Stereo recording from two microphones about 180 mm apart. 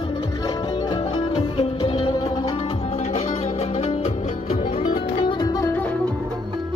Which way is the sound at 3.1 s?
35° left (ahead or behind).